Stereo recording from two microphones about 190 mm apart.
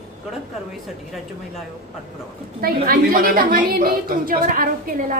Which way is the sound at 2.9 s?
50° right (ahead or behind).